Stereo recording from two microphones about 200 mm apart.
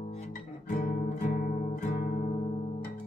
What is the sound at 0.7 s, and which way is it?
Music, 45° left (ahead or behind).